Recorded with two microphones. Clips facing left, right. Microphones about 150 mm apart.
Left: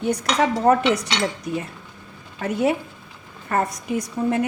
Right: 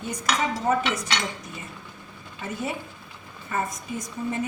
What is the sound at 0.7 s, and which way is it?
Speech, 65° left (ahead or behind).